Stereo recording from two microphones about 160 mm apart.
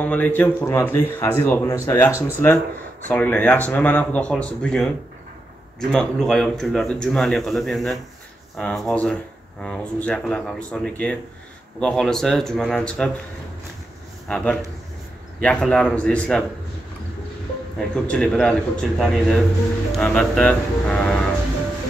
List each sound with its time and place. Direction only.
0.0 s speech: 10° left (ahead or behind)
5.9 s speech: 5° left (ahead or behind)
14.2 s speech: 5° left (ahead or behind)
17.7 s speech: 5° left (ahead or behind)